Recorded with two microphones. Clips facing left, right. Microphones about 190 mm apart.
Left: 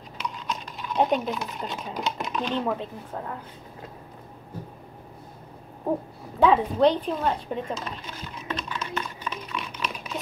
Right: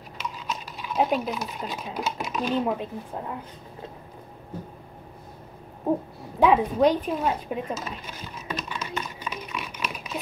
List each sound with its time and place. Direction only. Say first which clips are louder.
0.5 s speech: left 1 dB; 5° right (ahead or behind)
6.4 s speech: even; 10° right (ahead or behind)
8.5 s typing: even; 15° right (ahead or behind)